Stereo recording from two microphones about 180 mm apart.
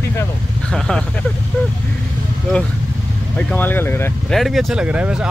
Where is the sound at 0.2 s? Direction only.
5° left (ahead or behind).